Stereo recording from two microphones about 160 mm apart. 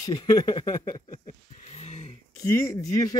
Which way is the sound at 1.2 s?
40° left (ahead or behind).